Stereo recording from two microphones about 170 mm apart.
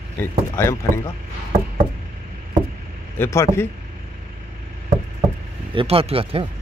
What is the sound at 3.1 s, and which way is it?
Speech, 15° left (ahead or behind).